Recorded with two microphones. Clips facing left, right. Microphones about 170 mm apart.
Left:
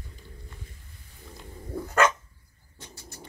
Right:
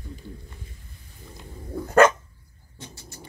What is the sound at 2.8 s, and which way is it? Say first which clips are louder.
Bird: right 4 dB; 25° right (ahead or behind).